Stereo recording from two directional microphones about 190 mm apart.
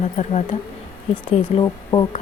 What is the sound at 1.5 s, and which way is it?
Speech, 25° left (ahead or behind).